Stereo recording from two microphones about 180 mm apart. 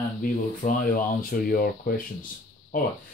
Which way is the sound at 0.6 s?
50° left (ahead or behind).